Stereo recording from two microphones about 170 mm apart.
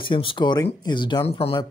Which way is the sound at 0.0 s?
30° left (ahead or behind).